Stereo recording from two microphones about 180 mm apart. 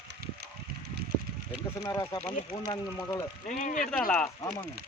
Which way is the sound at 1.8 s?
15° left (ahead or behind).